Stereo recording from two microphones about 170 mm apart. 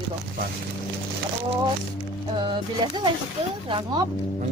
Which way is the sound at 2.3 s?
25° right (ahead or behind).